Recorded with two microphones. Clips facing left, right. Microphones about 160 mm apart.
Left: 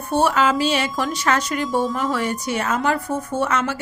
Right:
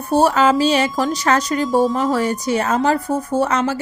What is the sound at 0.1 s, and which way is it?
A woman's voice, 40° right (ahead or behind).